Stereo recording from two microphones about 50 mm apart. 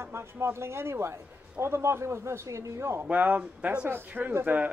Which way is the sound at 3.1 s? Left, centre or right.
Right.